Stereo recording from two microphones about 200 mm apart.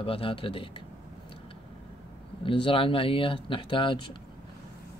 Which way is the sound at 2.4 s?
25° left (ahead or behind).